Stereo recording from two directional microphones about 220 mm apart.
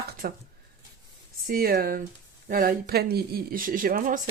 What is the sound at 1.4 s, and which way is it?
Speech, 40° right (ahead or behind).